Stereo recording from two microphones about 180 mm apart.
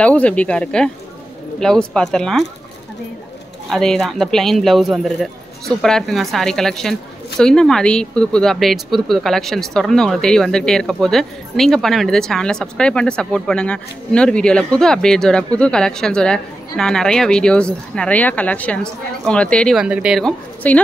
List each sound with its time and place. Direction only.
0.0 s speech: 5° left (ahead or behind)
3.7 s speech: centre (ahead or behind)